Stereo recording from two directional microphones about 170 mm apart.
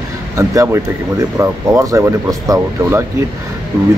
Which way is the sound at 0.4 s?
15° right (ahead or behind).